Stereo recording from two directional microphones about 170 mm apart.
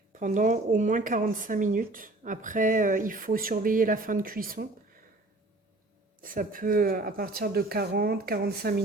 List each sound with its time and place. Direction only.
0.1 s speech: 50° right (ahead or behind)
6.2 s speech: 55° right (ahead or behind)